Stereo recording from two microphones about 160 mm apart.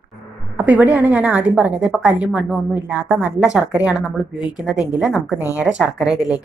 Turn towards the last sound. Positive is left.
turn(degrees=-5)  # may be behind; listen again after turning